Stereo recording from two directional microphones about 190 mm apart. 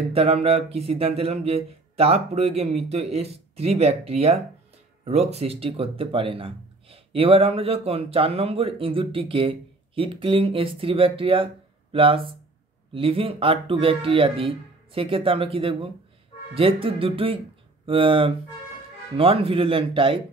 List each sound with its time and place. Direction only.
0.1 s speech: 30° right (ahead or behind)